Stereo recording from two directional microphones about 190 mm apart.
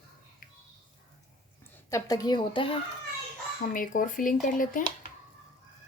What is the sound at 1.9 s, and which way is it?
Speech, 20° left (ahead or behind).